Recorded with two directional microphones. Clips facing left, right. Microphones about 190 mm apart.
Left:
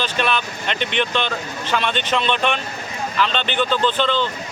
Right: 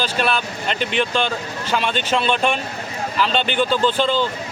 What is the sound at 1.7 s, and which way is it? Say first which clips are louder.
Speech: right 1 dB; 10° right (ahead or behind).